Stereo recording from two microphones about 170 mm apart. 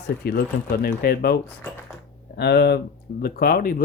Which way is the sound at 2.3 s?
80° left.